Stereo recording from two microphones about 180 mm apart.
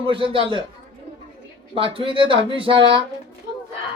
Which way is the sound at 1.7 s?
30° right (ahead or behind).